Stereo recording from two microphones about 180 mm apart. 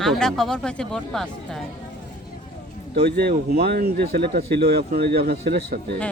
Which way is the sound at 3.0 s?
60° right (ahead or behind).